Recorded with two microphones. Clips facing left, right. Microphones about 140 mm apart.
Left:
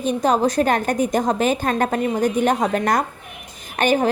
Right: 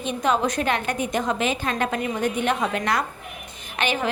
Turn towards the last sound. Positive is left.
turn(degrees=45)  # may be behind; listen again after turning